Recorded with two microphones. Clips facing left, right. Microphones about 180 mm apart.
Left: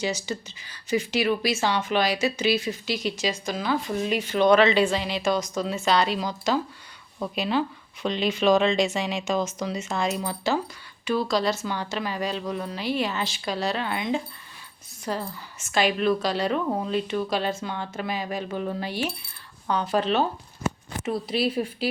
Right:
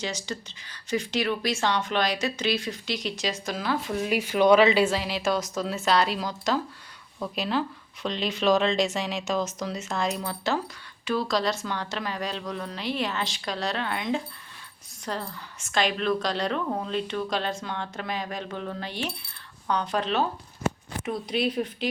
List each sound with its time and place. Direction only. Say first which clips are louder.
0.0 s a woman's voice: left 4 dB; 5° left (ahead or behind)